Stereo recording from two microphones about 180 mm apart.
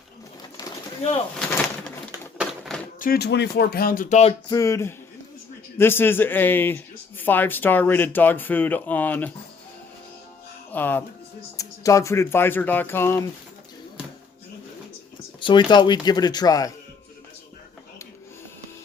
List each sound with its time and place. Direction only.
3.0 s speech: 60° left (ahead or behind); by 4.4 s 40° left (ahead or behind)
4.4 s speech: 20° left (ahead or behind)
10.7 s speech: 10° left (ahead or behind)
15.4 s speech: 25° left (ahead or behind)